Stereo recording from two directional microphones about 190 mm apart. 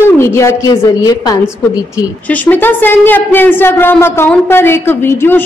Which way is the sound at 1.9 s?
10° left (ahead or behind).